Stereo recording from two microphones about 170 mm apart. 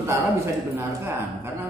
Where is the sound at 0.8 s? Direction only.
15° right (ahead or behind).